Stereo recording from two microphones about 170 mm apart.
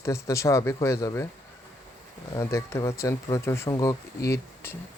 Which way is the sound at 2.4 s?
15° left (ahead or behind).